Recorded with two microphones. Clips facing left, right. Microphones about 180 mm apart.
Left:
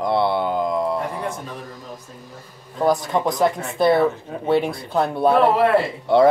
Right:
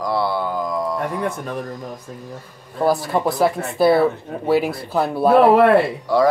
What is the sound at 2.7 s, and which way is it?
Speech, 5° right (ahead or behind).